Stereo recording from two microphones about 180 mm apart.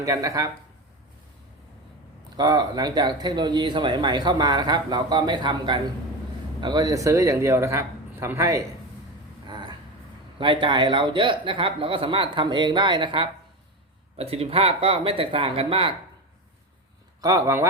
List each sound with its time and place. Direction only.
0.0 s speech: 20° right (ahead or behind)
2.3 s a man's voice: 25° right (ahead or behind)
9.5 s a sound: 25° right (ahead or behind)
10.3 s speech: 25° right (ahead or behind)
17.2 s a man's voice: 20° right (ahead or behind)